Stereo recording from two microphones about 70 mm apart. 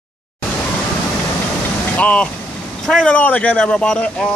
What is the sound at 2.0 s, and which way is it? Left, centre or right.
A man's voice, centre.